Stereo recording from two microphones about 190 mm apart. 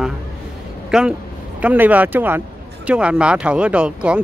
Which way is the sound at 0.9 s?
5° right (ahead or behind).